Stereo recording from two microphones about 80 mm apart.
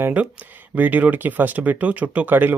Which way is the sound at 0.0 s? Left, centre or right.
Centre.